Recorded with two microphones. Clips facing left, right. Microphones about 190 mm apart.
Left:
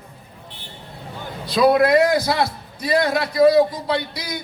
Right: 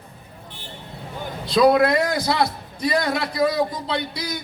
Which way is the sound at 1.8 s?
25° right (ahead or behind).